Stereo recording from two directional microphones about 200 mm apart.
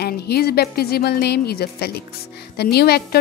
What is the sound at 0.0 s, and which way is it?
Speech, 50° left (ahead or behind).